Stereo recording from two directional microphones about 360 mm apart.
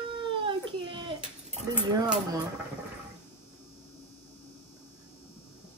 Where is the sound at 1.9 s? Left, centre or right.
Centre.